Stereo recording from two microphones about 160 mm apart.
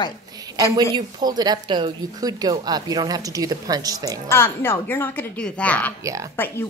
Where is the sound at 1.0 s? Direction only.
25° right (ahead or behind).